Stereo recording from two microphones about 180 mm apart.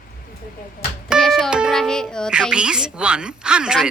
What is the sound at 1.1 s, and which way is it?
A child's voice, centre (ahead or behind).